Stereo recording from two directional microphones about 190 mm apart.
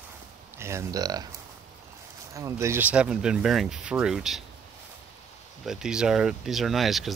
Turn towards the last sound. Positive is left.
turn(degrees=0)  # may be behind; listen again after turning